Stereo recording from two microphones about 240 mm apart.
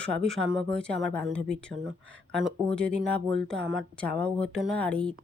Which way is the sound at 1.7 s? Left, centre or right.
Right.